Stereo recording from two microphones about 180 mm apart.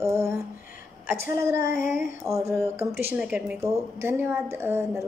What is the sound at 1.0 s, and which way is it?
A woman's voice, 15° right (ahead or behind).